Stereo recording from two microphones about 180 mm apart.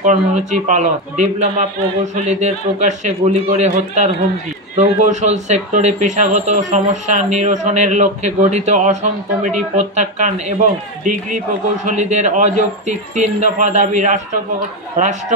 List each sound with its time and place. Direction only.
0.0 s a man's voice: 40° right (ahead or behind)